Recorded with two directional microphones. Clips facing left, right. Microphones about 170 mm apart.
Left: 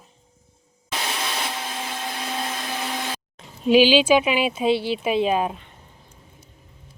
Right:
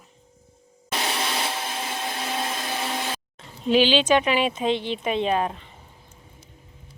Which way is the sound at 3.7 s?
10° left (ahead or behind).